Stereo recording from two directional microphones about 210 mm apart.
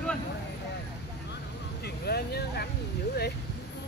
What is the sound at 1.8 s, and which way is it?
Vehicle, 50° left (ahead or behind).